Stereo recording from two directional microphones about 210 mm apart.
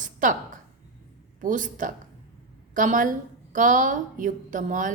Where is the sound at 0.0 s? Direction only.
40° right (ahead or behind).